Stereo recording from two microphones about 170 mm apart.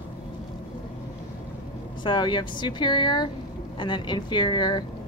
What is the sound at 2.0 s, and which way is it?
Speech, 30° left (ahead or behind).